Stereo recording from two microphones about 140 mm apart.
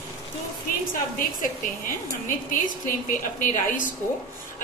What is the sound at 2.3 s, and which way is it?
A woman's voice, 75° left (ahead or behind).